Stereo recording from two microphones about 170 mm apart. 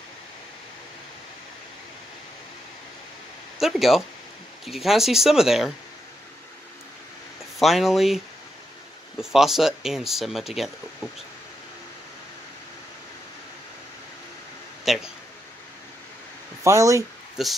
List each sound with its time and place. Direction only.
3.5 s speech: centre (ahead or behind)
7.5 s speech: centre (ahead or behind)
9.2 s speech: centre (ahead or behind)
14.9 s speech: centre (ahead or behind)
16.6 s speech: 20° right (ahead or behind)
17.4 s speech: centre (ahead or behind)